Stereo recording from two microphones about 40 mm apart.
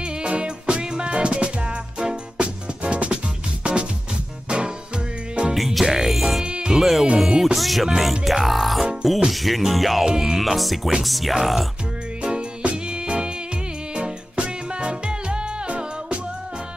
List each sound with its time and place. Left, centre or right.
0.0 s music: right
2.0 s music: centre
2.4 s music: right
5.5 s music: centre
6.4 s insect: right
6.7 s music: centre
7.5 s music: centre
12.2 s music: right